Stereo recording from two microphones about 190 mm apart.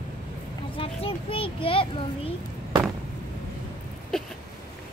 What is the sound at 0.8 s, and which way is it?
A child's voice, 30° left (ahead or behind).